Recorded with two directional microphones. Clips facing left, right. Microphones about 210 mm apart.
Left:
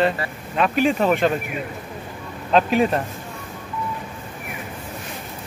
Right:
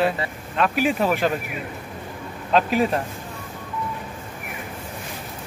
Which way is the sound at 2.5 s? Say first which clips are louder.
Left 2 dB; centre (ahead or behind).